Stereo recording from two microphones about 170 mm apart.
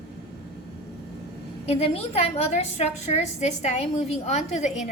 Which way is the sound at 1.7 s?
35° left (ahead or behind).